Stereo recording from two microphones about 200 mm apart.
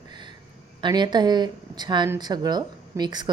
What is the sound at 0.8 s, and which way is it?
A woman's voice, 20° right (ahead or behind).